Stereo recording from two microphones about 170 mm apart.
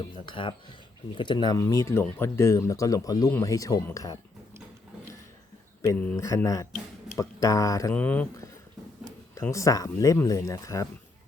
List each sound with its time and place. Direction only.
0.2 s speech: 30° left (ahead or behind)
5.8 s speech: 15° left (ahead or behind)